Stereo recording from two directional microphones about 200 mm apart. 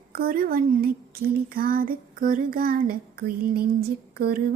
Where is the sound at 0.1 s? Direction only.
45° right (ahead or behind).